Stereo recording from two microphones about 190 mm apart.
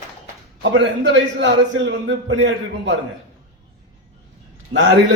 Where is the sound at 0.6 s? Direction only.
80° right.